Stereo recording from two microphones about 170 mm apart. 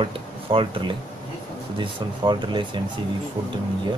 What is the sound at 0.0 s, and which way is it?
Speech, 30° right (ahead or behind).